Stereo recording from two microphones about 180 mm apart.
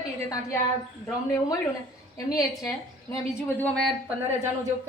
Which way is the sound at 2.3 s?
20° left (ahead or behind).